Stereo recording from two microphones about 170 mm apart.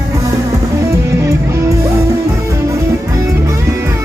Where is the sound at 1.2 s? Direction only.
15° right (ahead or behind).